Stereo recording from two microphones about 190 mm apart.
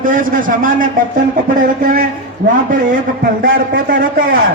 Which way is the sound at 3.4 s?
45° right (ahead or behind).